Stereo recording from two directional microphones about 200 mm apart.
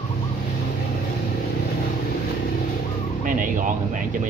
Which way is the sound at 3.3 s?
40° right (ahead or behind).